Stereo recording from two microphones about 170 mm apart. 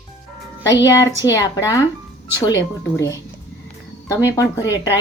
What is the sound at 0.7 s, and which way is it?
A woman's voice, 20° left (ahead or behind).